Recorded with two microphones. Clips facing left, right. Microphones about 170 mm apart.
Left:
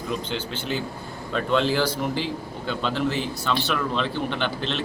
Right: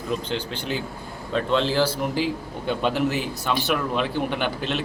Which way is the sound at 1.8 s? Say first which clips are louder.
Right 2 dB; 10° right (ahead or behind).